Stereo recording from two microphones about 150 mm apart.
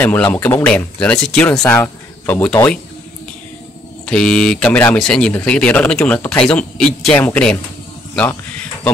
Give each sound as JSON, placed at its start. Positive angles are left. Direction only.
{"t": 0.0, "sound": "speech", "side_deg": 10}
{"t": 1.6, "sound": "speech", "side_deg": 15}
{"t": 4.0, "sound": "speech", "side_deg": 5}